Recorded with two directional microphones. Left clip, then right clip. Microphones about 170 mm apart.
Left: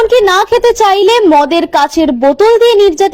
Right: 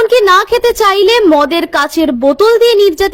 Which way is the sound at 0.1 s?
Centre (ahead or behind).